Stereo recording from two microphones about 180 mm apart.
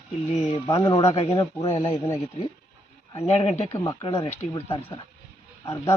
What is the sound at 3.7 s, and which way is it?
Speech, 20° left (ahead or behind).